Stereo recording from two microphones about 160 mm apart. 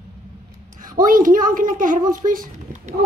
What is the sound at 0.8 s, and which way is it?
Speech, 60° right (ahead or behind).